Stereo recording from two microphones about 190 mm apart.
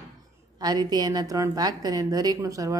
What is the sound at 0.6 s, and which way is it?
A woman's voice, 20° right (ahead or behind).